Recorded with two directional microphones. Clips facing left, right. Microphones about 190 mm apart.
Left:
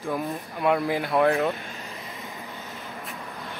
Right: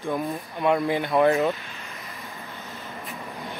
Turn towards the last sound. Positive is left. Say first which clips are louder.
# right 2 dB
turn(degrees=-15)  # may be behind; listen again after turning